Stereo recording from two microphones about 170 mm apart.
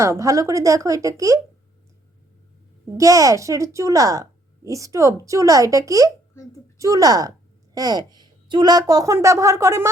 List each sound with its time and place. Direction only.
0.0 s speech: 20° right (ahead or behind)
2.8 s speech: 20° right (ahead or behind)
6.3 s a child's voice: 20° left (ahead or behind)
6.7 s a woman's voice: 20° right (ahead or behind)